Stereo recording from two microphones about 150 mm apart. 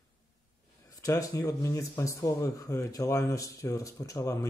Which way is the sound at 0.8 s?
25° left (ahead or behind).